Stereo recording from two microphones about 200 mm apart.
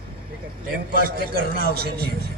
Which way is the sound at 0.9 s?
45° right (ahead or behind).